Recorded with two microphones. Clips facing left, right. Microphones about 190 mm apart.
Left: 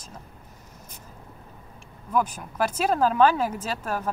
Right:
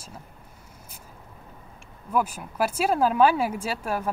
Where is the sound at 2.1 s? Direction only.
10° right (ahead or behind).